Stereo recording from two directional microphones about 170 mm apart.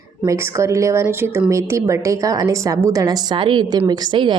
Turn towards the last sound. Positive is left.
turn(degrees=-25)  # may be behind; listen again after turning